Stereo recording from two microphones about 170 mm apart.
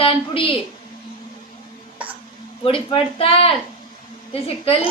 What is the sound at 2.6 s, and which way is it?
A woman's voice, 30° left (ahead or behind).